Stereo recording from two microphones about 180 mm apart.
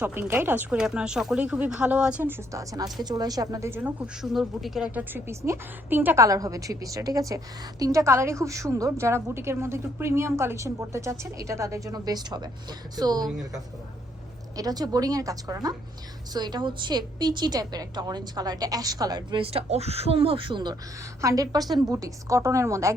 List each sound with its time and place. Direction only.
0.0 s speech: 10° right (ahead or behind)
2.5 s a woman's voice: 20° right (ahead or behind)
14.5 s a woman's voice: 20° right (ahead or behind)